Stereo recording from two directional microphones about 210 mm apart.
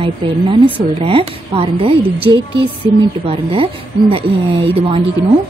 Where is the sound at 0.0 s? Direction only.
25° right (ahead or behind).